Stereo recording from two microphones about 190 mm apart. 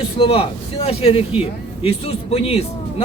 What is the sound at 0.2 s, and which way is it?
A man's voice, 30° left (ahead or behind).